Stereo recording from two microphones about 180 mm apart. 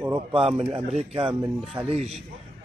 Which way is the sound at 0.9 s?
35° right (ahead or behind).